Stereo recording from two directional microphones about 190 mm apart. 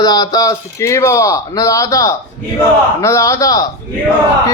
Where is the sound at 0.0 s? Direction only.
20° left (ahead or behind).